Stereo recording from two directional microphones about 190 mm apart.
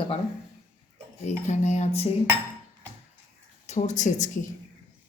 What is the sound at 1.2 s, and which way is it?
Speech, 40° left (ahead or behind).